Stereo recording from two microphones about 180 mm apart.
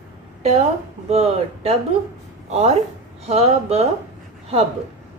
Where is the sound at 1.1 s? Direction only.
35° right (ahead or behind).